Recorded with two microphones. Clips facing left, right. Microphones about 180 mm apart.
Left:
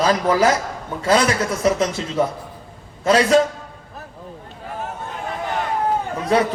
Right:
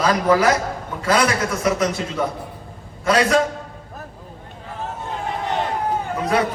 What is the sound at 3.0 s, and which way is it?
Speech, 25° left (ahead or behind).